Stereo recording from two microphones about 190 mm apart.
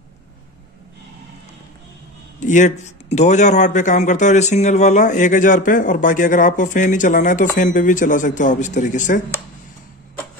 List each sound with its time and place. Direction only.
2.4 s speech: 40° left (ahead or behind)